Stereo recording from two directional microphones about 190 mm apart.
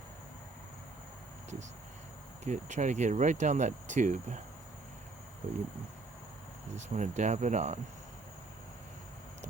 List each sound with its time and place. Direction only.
2.4 s speech: 40° right (ahead or behind)
6.7 s speech: 40° right (ahead or behind)